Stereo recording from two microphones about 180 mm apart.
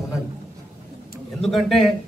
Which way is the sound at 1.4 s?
Centre (ahead or behind).